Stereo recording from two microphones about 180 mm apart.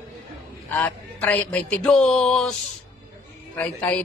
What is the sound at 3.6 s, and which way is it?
Speech, 10° left (ahead or behind).